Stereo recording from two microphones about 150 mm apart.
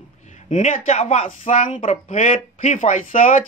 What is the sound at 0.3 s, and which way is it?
Speech, 55° left (ahead or behind).